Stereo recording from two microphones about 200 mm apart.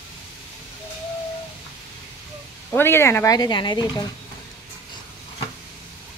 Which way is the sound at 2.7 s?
10° left (ahead or behind).